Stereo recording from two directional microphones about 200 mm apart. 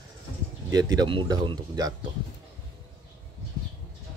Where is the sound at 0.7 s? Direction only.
20° right (ahead or behind).